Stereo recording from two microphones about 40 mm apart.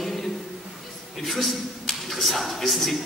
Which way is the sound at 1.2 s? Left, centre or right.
Centre.